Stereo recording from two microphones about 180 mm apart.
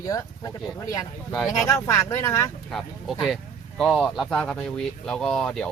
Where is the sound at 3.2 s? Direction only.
Centre (ahead or behind).